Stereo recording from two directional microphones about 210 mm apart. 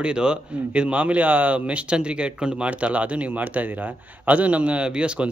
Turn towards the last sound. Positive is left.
turn(degrees=-5)  # may be behind; listen again after turning